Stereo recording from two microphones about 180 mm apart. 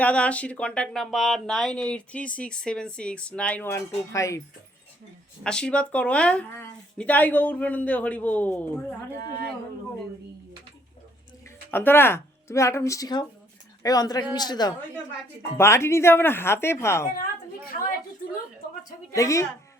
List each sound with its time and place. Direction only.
0.0 s speech: 5° left (ahead or behind)
5.4 s speech: 5° left (ahead or behind)
11.7 s speech: 10° left (ahead or behind)
19.1 s speech: 15° left (ahead or behind)